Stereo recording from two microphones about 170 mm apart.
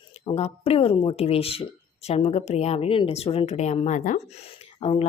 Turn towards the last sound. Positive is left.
turn(degrees=35)  # may be behind; listen again after turning